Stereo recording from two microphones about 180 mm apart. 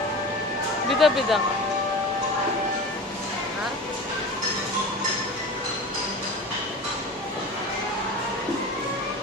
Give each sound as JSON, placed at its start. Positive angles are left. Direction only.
{"t": 0.9, "sound": "speech", "side_deg": 0}